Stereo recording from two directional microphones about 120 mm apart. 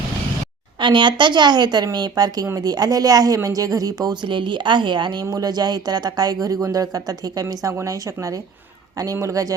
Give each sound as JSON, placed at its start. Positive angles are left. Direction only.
{"t": 0.8, "sound": "speech", "side_deg": -40}